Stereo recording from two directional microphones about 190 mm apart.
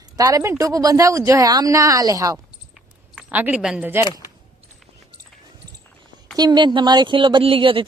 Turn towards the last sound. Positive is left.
turn(degrees=-25)  # may be behind; listen again after turning